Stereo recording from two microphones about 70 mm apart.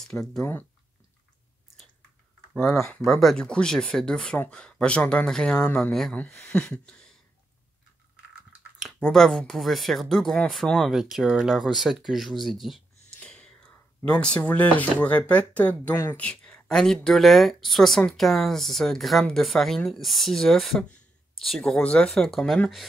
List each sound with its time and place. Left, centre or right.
0.0 s speech: centre
2.5 s speech: centre
9.1 s speech: centre
13.2 s speech: centre